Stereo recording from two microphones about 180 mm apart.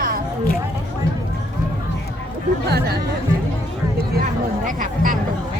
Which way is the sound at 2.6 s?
65° right (ahead or behind).